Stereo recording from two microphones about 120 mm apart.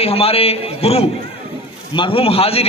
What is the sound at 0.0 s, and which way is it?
A man's voice, 55° left (ahead or behind).